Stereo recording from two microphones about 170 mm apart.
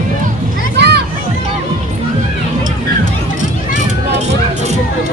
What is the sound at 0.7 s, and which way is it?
Children playing, 75° right (ahead or behind).